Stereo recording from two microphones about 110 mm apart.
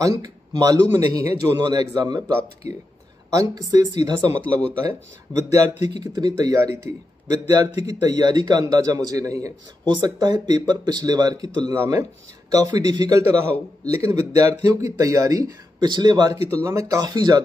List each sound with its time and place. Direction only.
0.0 s speech: 35° right (ahead or behind)
3.3 s speech: 35° right (ahead or behind)
4.4 s speech: 10° left (ahead or behind)
4.8 s speech: 30° right (ahead or behind)
11.7 s speech: 25° right (ahead or behind); by 16.3 s 40° right (ahead or behind)
16.4 s speech: 25° right (ahead or behind)